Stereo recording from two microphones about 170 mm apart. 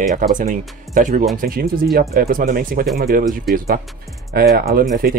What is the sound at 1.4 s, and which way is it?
Speech, 60° right (ahead or behind).